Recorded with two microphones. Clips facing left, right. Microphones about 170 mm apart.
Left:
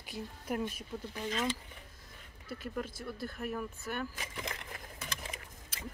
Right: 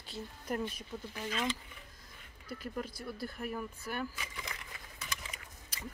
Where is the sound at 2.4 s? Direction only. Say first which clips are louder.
Left 1 dB; centre (ahead or behind).